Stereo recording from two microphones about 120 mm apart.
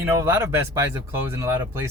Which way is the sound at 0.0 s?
20° right (ahead or behind).